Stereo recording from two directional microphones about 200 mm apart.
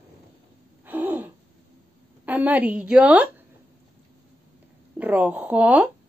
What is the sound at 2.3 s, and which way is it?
Speech, 10° right (ahead or behind).